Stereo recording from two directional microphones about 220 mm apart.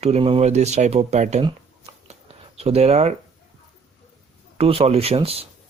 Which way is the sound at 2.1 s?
30° right (ahead or behind).